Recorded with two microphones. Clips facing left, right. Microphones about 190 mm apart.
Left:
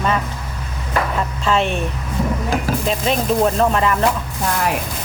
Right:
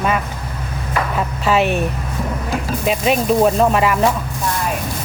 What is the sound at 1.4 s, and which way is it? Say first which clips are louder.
Speech: right 3 dB; 5° right (ahead or behind).